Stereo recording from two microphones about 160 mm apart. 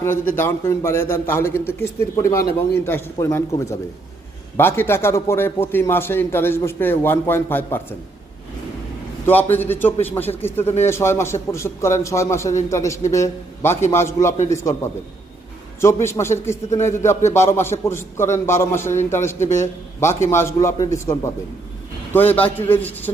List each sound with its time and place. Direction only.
0.0 s a man's voice: 15° left (ahead or behind)
9.2 s a man's voice: 10° left (ahead or behind)
15.8 s a man's voice: 15° left (ahead or behind)